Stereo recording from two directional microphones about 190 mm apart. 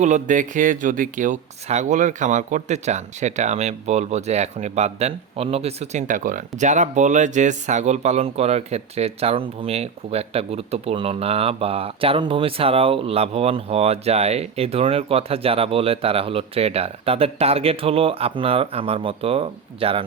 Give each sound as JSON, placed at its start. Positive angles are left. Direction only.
{"t": 0.0, "sound": "speech", "side_deg": -40}